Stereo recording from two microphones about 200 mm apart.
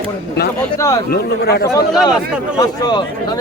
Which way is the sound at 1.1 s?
50° left (ahead or behind).